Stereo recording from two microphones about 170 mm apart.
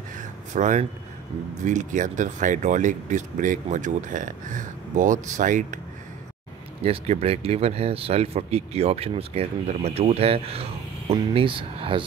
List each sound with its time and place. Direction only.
0.5 s speech: 45° right (ahead or behind)
6.8 s speech: 35° right (ahead or behind)